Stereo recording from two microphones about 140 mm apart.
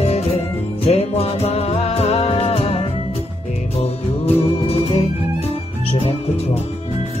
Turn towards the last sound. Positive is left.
turn(degrees=45)  # may be behind; listen again after turning